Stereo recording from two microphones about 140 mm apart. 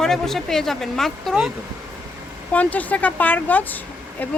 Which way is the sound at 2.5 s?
10° left (ahead or behind).